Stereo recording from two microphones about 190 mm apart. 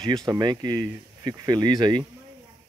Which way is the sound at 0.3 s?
20° right (ahead or behind).